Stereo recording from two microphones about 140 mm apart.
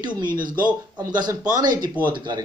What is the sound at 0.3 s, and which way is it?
Speech, 80° right.